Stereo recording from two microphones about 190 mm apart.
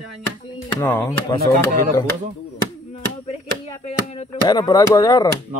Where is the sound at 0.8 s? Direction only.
10° left (ahead or behind).